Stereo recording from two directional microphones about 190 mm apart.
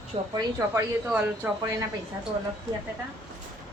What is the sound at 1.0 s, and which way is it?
Speech, 5° right (ahead or behind).